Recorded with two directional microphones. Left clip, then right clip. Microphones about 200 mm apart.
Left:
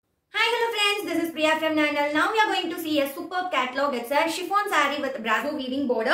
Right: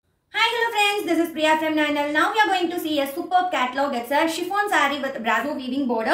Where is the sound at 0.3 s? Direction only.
20° left (ahead or behind).